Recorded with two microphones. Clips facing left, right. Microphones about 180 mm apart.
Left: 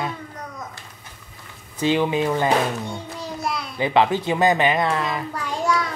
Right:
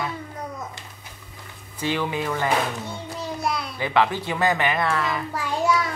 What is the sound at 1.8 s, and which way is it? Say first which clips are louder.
Speech: left 6 dB; 20° left (ahead or behind).